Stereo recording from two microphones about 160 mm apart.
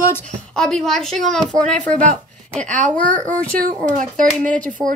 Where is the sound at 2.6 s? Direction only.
50° right (ahead or behind).